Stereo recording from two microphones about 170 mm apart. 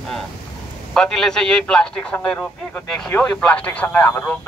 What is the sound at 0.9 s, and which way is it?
A man's voice, 5° left (ahead or behind).